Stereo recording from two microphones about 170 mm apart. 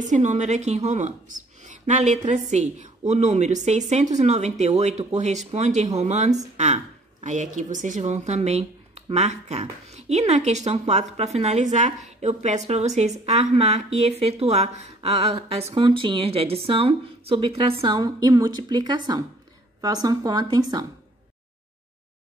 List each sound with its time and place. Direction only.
0.1 s a woman's voice: 45° right (ahead or behind); by 20.8 s 25° right (ahead or behind)